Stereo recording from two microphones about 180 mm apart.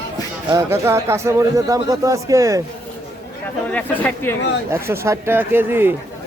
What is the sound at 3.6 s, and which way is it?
Speech, 10° left (ahead or behind).